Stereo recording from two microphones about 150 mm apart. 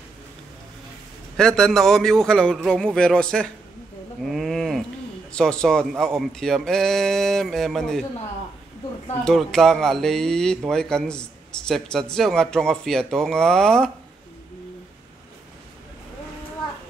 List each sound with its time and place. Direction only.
1.3 s a man's voice: 5° left (ahead or behind)
4.2 s a sound: centre (ahead or behind)
5.3 s a man's voice: 5° left (ahead or behind)
9.2 s a man's voice: centre (ahead or behind)